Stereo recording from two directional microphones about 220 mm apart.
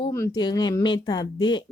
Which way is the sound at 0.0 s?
15° left (ahead or behind).